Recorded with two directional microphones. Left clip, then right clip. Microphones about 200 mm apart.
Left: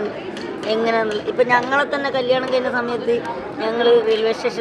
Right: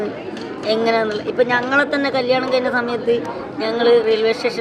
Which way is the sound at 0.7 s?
20° right (ahead or behind).